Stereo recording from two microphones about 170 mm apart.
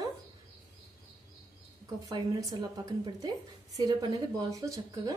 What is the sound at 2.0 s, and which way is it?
A woman's voice, 20° right (ahead or behind).